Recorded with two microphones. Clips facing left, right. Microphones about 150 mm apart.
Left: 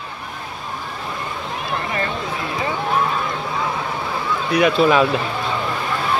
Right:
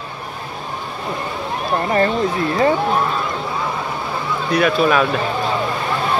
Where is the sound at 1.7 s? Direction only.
40° right (ahead or behind).